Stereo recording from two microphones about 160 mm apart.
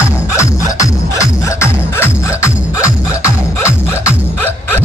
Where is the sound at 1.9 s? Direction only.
15° left (ahead or behind).